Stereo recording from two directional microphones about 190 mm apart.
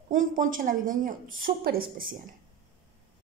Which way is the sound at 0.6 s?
45° right (ahead or behind).